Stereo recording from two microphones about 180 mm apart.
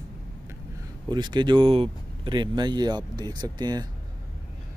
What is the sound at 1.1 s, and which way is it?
Speech, 25° right (ahead or behind).